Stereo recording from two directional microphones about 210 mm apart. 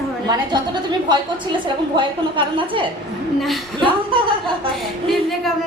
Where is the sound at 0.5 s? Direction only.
20° right (ahead or behind).